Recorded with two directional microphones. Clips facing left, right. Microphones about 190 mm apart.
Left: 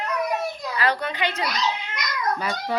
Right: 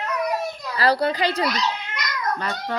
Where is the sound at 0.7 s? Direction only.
35° right (ahead or behind).